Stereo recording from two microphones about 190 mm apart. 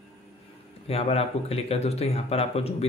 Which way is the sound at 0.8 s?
30° left (ahead or behind).